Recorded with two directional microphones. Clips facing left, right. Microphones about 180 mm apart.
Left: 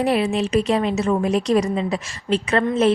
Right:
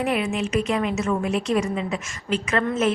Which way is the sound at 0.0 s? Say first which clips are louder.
Left 4 dB; 35° left (ahead or behind).